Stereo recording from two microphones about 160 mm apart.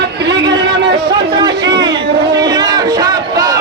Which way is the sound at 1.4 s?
25° right (ahead or behind).